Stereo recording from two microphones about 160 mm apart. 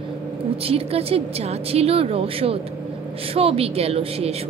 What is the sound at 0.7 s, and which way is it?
Speech, 40° right (ahead or behind).